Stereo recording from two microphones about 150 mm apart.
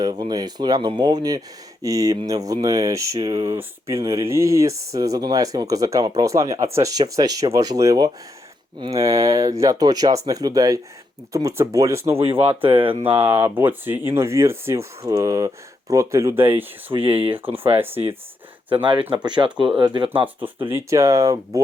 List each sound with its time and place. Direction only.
0.0 s speech: 25° right (ahead or behind)
12.1 s speech: 40° right (ahead or behind)
13.1 s speech: 15° right (ahead or behind)
16.9 s speech: 40° right (ahead or behind)
17.7 s speech: 15° right (ahead or behind)
18.8 s speech: 30° right (ahead or behind)
20.7 s speech: 15° right (ahead or behind)